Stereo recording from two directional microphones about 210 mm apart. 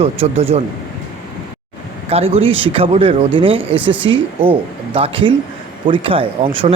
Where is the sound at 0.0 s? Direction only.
30° right (ahead or behind).